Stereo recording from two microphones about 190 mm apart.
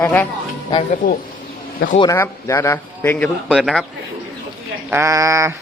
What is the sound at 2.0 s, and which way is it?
A man's voice, 15° left (ahead or behind).